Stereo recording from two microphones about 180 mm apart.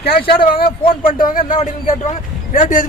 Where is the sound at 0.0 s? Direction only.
60° left (ahead or behind).